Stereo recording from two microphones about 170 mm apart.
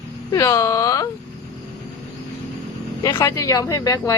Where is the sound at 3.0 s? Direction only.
25° left (ahead or behind).